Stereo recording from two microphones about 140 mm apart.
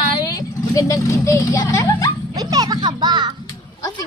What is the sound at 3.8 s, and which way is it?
Speech, 25° left (ahead or behind).